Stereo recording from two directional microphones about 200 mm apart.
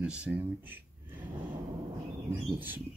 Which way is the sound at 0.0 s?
5° right (ahead or behind).